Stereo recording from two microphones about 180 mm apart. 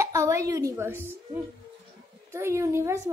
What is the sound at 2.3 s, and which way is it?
Speech, 15° right (ahead or behind).